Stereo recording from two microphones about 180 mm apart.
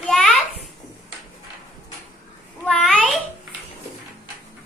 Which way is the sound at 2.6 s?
Centre (ahead or behind).